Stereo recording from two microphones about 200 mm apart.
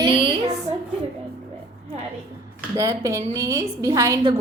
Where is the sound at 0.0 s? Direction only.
20° right (ahead or behind).